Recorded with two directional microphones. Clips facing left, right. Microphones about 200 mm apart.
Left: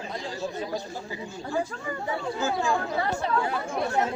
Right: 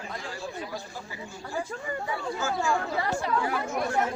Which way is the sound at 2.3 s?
20° left (ahead or behind).